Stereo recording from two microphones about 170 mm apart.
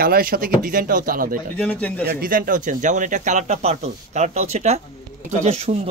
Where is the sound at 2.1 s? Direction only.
55° right (ahead or behind).